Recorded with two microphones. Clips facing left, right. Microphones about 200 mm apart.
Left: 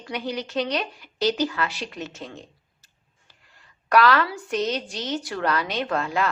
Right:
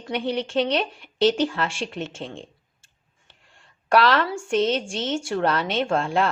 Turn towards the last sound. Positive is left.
turn(degrees=-30)  # may be behind; listen again after turning